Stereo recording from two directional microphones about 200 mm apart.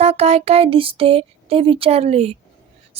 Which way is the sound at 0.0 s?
30° right (ahead or behind).